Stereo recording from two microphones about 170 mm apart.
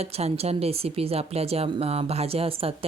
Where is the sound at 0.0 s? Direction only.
40° right (ahead or behind).